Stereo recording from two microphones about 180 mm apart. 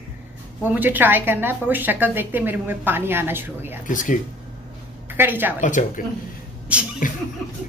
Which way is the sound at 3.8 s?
45° left (ahead or behind).